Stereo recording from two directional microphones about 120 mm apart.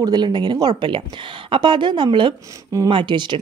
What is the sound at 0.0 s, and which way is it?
Speech, 35° right (ahead or behind).